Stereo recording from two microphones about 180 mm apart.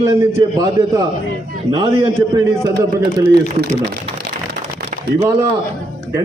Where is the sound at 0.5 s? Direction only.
20° right (ahead or behind).